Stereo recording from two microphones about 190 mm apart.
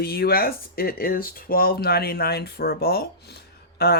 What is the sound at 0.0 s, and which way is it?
Speech, 55° left (ahead or behind).